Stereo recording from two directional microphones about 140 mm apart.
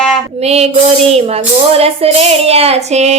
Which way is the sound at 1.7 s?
45° right (ahead or behind).